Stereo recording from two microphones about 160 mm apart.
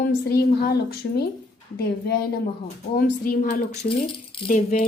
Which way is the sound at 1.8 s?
75° left (ahead or behind).